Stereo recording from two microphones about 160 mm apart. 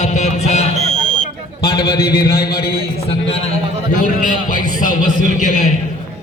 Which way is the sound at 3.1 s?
40° left (ahead or behind).